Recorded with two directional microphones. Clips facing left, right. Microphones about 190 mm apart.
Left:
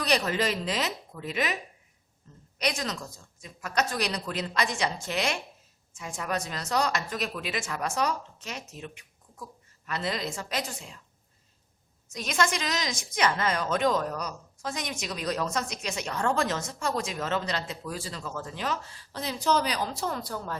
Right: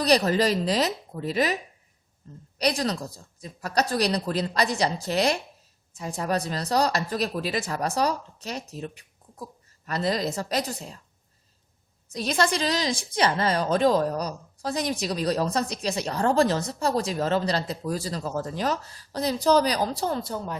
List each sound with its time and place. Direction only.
0.0 s a woman's voice: 35° right (ahead or behind)
12.1 s a woman's voice: 35° right (ahead or behind)